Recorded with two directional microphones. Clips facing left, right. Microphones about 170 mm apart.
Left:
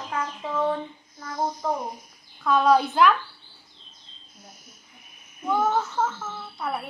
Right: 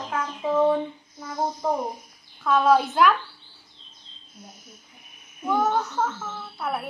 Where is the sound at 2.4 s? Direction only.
Centre (ahead or behind).